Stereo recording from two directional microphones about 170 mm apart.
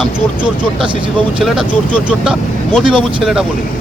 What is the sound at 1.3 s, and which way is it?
Speech, 5° right (ahead or behind).